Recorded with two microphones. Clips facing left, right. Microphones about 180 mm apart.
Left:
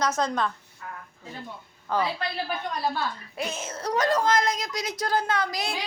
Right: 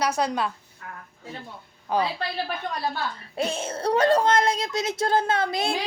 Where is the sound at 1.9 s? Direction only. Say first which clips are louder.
Right 2 dB; 15° right (ahead or behind).